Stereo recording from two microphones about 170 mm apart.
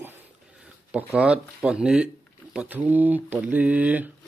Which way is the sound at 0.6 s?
5° right (ahead or behind).